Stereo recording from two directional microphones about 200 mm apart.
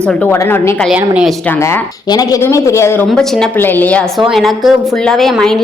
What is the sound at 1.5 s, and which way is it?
A woman's voice, 10° left (ahead or behind).